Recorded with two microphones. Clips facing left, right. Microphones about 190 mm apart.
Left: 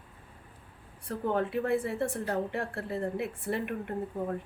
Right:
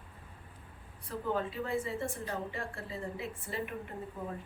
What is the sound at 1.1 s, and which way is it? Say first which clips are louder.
A woman's voice: left 5 dB; 60° left (ahead or behind).